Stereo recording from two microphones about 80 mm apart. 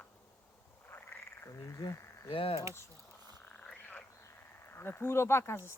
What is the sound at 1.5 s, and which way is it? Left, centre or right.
Speech, left.